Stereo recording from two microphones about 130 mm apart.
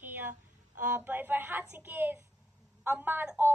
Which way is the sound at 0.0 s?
15° right (ahead or behind).